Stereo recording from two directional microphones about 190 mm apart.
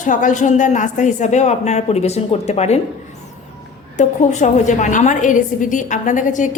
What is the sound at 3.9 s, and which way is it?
A woman's voice, 40° left (ahead or behind).